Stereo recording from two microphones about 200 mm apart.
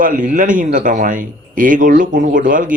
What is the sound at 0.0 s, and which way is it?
Speech, 45° right (ahead or behind).